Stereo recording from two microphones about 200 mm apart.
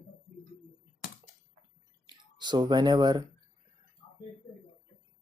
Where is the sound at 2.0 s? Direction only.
20° right (ahead or behind).